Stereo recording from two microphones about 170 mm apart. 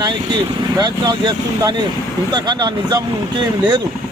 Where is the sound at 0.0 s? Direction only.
25° right (ahead or behind).